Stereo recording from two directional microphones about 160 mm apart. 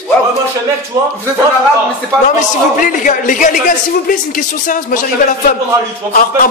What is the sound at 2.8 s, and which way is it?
A man's voice, 55° left (ahead or behind).